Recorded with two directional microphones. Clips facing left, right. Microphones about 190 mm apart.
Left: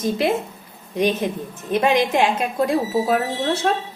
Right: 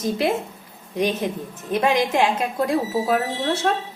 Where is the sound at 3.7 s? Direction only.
25° left (ahead or behind).